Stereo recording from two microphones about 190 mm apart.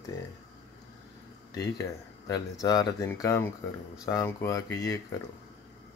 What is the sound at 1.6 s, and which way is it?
Speech, 15° left (ahead or behind).